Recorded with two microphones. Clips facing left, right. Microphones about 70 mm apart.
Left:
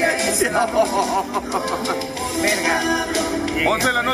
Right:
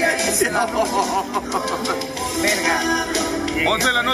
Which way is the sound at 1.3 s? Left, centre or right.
Centre.